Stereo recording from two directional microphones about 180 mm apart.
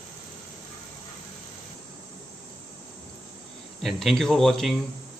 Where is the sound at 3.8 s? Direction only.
Centre (ahead or behind).